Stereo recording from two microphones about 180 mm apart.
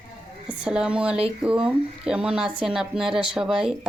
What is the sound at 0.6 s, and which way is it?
A woman's voice, 5° right (ahead or behind).